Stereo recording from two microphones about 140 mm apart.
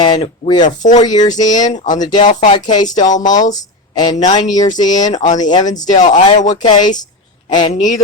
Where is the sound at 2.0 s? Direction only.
30° left (ahead or behind).